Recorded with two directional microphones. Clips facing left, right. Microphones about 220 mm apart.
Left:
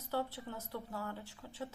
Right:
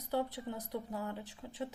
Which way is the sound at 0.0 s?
15° right (ahead or behind).